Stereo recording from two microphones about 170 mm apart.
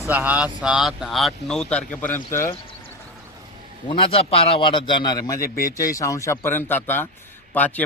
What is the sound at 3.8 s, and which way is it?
A man's voice, 30° left (ahead or behind).